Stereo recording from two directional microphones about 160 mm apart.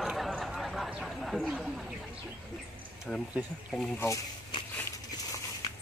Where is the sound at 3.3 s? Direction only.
Centre (ahead or behind).